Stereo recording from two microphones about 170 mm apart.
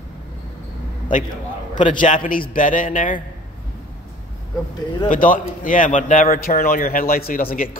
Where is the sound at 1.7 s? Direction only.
45° left (ahead or behind).